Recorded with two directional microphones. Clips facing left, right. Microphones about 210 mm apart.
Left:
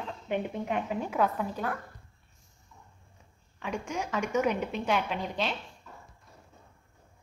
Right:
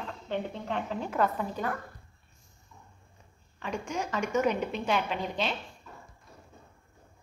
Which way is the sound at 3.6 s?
5° left (ahead or behind).